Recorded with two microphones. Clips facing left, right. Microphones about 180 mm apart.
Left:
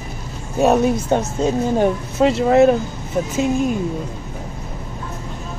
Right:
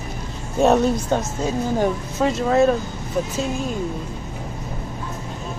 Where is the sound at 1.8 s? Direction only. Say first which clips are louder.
Left 4 dB; 20° left (ahead or behind).